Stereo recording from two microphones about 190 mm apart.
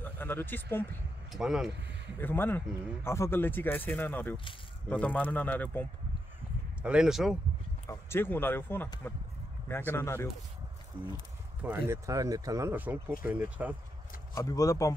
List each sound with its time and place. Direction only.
0.0 s speech: 10° left (ahead or behind)
1.3 s speech: centre (ahead or behind)
1.7 s speech: 70° right (ahead or behind)
2.1 s speech: 10° left (ahead or behind)
6.8 s speech: 5° right (ahead or behind)
7.9 s speech: 10° left (ahead or behind)
11.9 s speech: 20° right (ahead or behind)
14.3 s speech: 20° left (ahead or behind)